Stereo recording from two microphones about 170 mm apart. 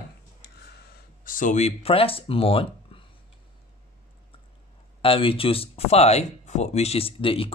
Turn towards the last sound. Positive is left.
turn(degrees=35)  # may be behind; listen again after turning